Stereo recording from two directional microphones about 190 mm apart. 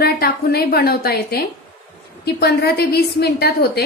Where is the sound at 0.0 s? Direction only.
55° left (ahead or behind).